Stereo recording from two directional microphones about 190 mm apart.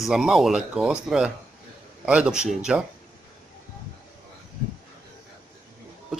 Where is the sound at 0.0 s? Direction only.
Centre (ahead or behind).